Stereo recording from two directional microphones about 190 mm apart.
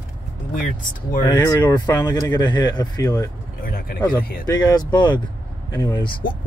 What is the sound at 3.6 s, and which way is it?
Speech, 50° left (ahead or behind).